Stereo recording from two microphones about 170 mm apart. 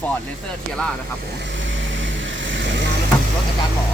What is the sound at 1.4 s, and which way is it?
Vehicle, 90° right.